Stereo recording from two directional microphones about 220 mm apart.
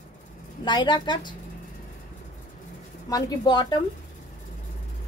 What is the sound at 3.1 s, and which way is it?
Speech, 20° left (ahead or behind).